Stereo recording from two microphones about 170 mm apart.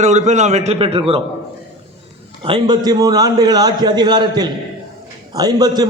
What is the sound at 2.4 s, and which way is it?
A man's voice, 25° right (ahead or behind).